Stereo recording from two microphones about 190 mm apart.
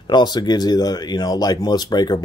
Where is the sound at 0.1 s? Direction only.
20° left (ahead or behind).